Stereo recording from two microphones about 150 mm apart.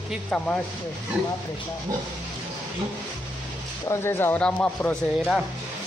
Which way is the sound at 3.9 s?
15° left (ahead or behind).